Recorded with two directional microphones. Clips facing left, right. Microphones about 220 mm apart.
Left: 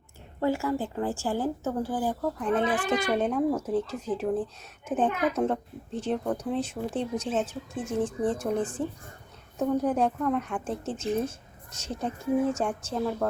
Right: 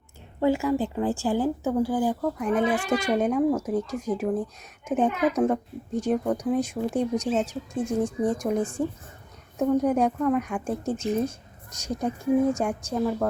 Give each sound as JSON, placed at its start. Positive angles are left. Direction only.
{"t": 0.4, "sound": "speech", "side_deg": -15}